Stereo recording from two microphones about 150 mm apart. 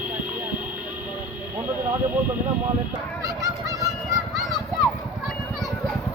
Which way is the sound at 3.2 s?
25° right (ahead or behind).